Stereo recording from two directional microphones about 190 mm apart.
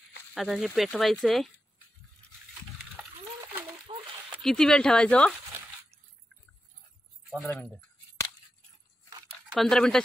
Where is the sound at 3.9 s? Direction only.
30° right (ahead or behind).